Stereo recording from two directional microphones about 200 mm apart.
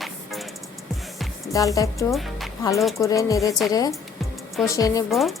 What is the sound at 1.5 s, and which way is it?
Speech, 15° left (ahead or behind).